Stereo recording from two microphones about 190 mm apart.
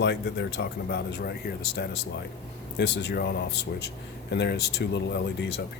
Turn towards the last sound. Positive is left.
turn(degrees=65)  # may be behind; listen again after turning